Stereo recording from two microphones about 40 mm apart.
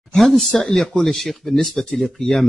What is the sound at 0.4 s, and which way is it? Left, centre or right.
Speech, centre.